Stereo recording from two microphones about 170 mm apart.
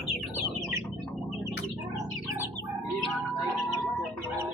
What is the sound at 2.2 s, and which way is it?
Bird, 15° right (ahead or behind).